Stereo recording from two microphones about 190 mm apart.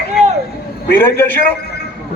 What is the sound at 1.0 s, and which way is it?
Speech, 10° left (ahead or behind).